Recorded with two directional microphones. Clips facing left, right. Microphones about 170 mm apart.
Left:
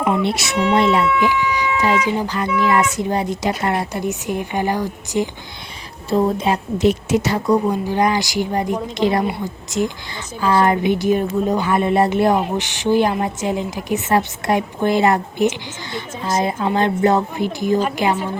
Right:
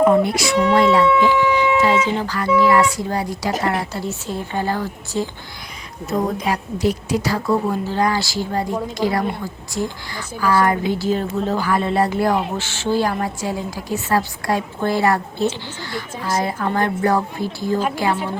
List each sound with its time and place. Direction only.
0.3 s a woman's voice: 25° left (ahead or behind)